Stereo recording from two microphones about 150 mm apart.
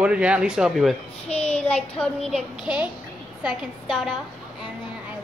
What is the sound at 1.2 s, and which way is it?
Child singing, 45° left (ahead or behind).